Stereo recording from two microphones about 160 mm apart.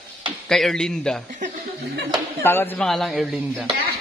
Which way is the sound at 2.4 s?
15° left (ahead or behind).